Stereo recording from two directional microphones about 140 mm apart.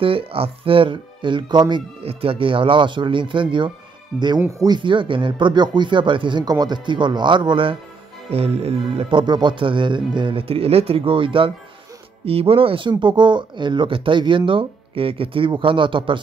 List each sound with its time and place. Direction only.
0.0 s speech: 40° right (ahead or behind)
4.1 s speech: 5° left (ahead or behind)
4.6 s speech: 30° right (ahead or behind)
8.3 s music: 45° right (ahead or behind)
9.2 s speech: 35° right (ahead or behind)